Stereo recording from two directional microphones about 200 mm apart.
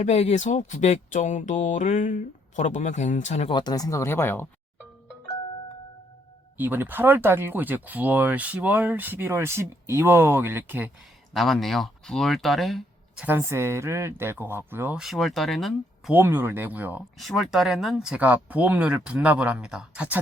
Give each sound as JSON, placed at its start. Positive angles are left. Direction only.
{"t": 0.0, "sound": "speech", "side_deg": 35}
{"t": 3.6, "sound": "speech", "side_deg": 20}
{"t": 6.6, "sound": "speech", "side_deg": -10}
{"t": 11.3, "sound": "speech", "side_deg": 0}